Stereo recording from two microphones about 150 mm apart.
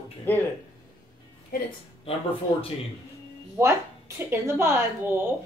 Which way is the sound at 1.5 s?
75° left (ahead or behind).